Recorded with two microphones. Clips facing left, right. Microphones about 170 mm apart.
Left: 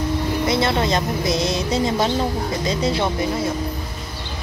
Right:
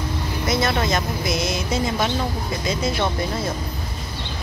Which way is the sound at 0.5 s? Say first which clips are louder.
Even; 25° left (ahead or behind).